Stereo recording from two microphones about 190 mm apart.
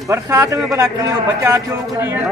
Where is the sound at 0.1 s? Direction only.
15° right (ahead or behind).